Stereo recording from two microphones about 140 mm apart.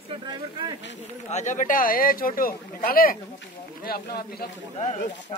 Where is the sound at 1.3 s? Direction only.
60° left (ahead or behind); by 4.5 s 90° left.